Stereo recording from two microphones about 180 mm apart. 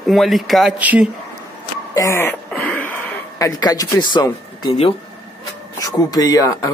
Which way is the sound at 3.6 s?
20° left (ahead or behind).